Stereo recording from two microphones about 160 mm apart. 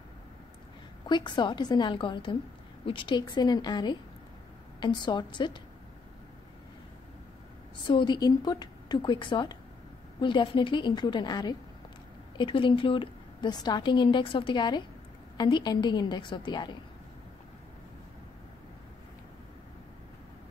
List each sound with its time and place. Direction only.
1.0 s a woman's voice: 30° left (ahead or behind)
7.8 s a woman's voice: 30° left (ahead or behind)